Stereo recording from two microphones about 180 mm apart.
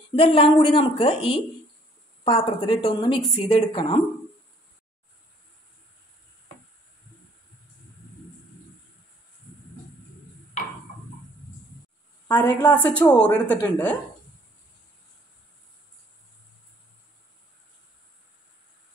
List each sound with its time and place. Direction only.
0.1 s a woman's voice: 30° left (ahead or behind)
12.4 s a woman's voice: 10° left (ahead or behind)